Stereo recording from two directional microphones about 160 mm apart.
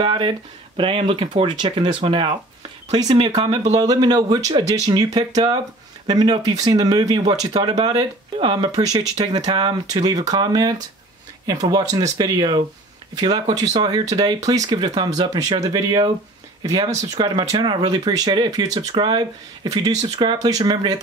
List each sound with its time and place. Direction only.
0.0 s speech: 30° right (ahead or behind)